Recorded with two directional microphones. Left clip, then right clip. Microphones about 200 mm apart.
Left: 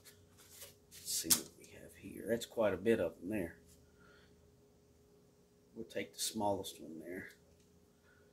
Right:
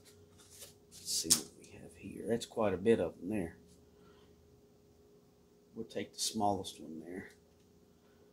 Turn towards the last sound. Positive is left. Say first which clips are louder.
# right 3 dB
turn(degrees=-15)  # may be behind; listen again after turning